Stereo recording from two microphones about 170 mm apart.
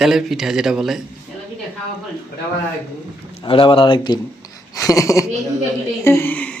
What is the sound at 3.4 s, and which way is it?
Speech, 30° left (ahead or behind).